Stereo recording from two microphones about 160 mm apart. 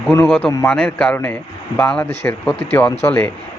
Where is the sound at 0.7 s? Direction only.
5° left (ahead or behind).